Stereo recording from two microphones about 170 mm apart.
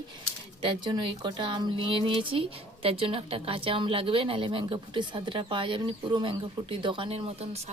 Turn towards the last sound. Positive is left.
turn(degrees=-35)  # may be behind; listen again after turning